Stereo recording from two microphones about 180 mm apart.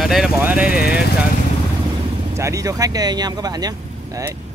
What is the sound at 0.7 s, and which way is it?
Speech, 60° left (ahead or behind).